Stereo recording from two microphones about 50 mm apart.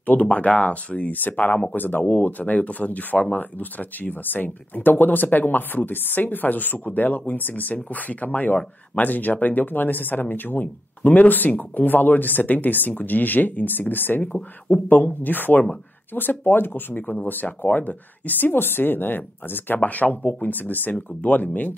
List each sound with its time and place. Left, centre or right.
0.0 s speech: left
1.8 s a woman's voice: left
19.8 s speech: left